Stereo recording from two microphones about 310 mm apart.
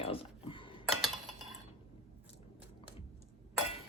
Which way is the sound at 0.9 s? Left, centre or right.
Centre.